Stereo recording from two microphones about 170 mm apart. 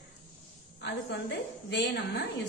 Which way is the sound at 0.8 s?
90° left.